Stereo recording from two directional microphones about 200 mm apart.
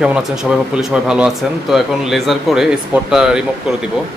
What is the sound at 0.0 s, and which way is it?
Speech, 5° right (ahead or behind).